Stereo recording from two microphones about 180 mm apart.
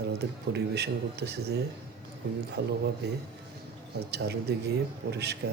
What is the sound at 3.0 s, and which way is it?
Speech, 65° right (ahead or behind).